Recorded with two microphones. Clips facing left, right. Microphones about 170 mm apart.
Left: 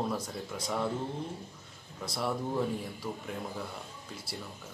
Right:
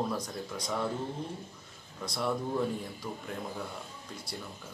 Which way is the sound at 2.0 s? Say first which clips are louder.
Right 1 dB; 5° left (ahead or behind).